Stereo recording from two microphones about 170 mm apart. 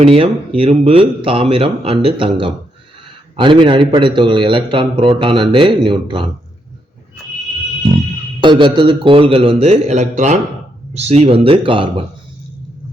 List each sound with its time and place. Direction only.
0.0 s a man's voice: 35° right (ahead or behind)
8.4 s speech: 30° right (ahead or behind)